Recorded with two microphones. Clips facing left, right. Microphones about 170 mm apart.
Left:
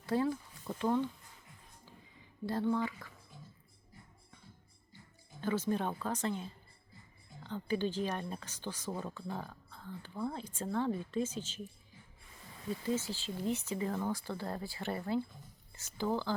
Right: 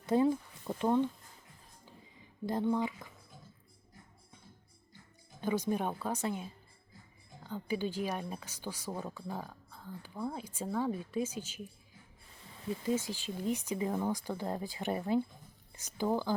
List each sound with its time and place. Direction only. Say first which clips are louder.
0.0 s a sound: right 4 dB; 20° right (ahead or behind)
2.5 s speech: right 1 dB; 15° right (ahead or behind)
5.4 s speech: right 1 dB; 15° right (ahead or behind)
12.8 s speech: right 2 dB; 15° right (ahead or behind)